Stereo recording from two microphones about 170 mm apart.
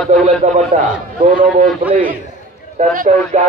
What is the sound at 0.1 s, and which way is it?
A man's voice, 40° right (ahead or behind).